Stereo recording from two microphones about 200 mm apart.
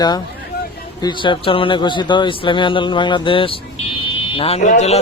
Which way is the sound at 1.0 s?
25° left (ahead or behind).